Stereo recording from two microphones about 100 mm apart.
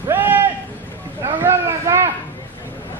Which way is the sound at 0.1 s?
20° right (ahead or behind).